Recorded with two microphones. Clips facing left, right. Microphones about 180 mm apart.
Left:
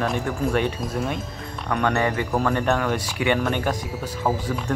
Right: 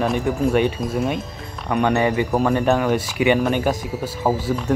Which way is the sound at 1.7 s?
15° right (ahead or behind).